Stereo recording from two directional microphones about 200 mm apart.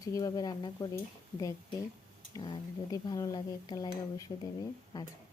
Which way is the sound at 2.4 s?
20° left (ahead or behind).